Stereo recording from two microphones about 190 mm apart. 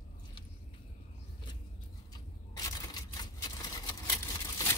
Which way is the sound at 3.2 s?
20° left (ahead or behind).